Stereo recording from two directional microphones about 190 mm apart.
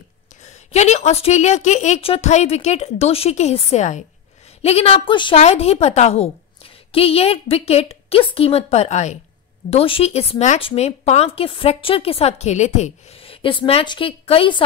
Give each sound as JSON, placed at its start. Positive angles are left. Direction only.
{"t": 0.7, "sound": "speech", "side_deg": 35}